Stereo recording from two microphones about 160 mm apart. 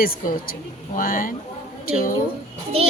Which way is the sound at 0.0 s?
65° left (ahead or behind).